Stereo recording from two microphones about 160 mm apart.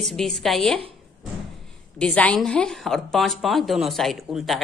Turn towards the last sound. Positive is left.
turn(degrees=0)  # may be behind; listen again after turning